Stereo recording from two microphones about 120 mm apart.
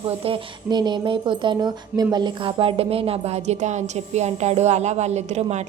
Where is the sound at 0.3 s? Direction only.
40° right (ahead or behind).